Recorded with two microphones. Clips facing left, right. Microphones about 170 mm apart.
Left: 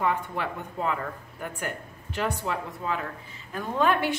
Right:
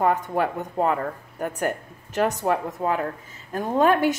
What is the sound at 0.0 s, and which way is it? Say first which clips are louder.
A woman's voice: right 6 dB; 40° right (ahead or behind).